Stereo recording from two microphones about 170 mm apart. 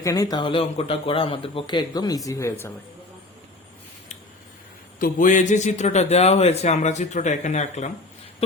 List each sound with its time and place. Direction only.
0.0 s speech: 20° left (ahead or behind)
4.9 s a man's voice: 55° left (ahead or behind)